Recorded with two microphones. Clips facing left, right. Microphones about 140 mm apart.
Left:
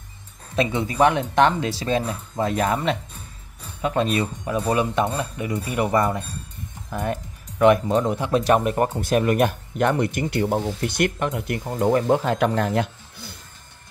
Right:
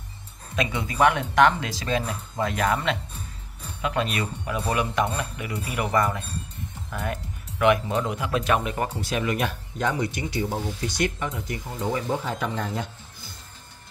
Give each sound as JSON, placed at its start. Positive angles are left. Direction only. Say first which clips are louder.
{"t": 0.6, "sound": "speech", "louder": "left 4 dB", "side_deg": 25}